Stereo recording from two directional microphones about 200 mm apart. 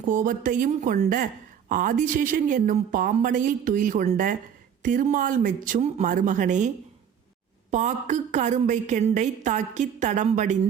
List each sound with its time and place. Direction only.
0.1 s a woman's voice: 40° right (ahead or behind)
7.7 s a woman's voice: 35° right (ahead or behind)